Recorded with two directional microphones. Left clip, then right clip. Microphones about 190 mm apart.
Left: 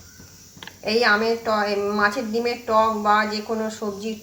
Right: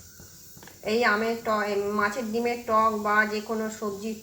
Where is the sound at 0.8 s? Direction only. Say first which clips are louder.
Left 5 dB; centre (ahead or behind).